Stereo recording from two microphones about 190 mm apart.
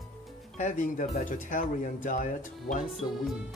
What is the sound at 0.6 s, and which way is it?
Speech, 40° left (ahead or behind).